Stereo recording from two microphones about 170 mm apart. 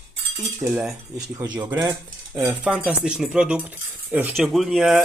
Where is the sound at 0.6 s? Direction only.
5° right (ahead or behind).